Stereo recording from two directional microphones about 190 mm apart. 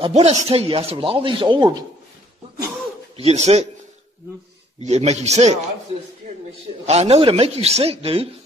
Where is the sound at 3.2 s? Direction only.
35° right (ahead or behind).